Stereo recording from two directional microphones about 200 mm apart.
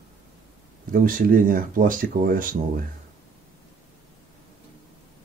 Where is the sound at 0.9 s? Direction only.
45° right (ahead or behind).